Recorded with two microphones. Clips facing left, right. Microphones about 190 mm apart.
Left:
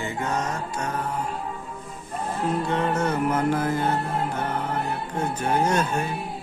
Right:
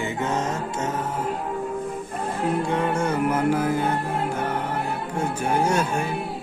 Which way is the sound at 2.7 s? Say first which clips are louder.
Right 1 dB; 10° right (ahead or behind).